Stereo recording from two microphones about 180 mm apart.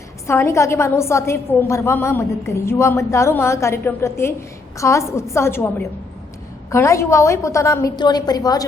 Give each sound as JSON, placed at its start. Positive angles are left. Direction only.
{"t": 0.3, "sound": "a woman's voice", "side_deg": 15}